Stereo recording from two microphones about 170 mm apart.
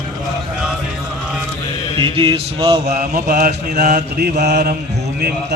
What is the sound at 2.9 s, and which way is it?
Mantra, 55° right (ahead or behind).